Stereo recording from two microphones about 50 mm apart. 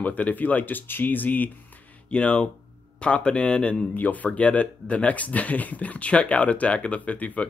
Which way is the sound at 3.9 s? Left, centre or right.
Left.